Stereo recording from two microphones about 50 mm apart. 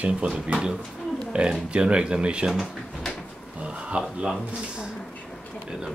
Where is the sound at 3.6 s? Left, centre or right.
Right.